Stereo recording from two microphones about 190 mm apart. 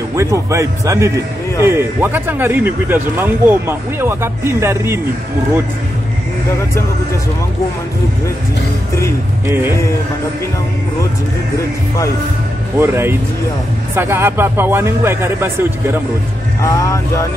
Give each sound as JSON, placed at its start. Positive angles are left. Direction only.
{"t": 0.1, "sound": "speech", "side_deg": -15}
{"t": 12.7, "sound": "speech", "side_deg": -10}
{"t": 16.6, "sound": "speech", "side_deg": 15}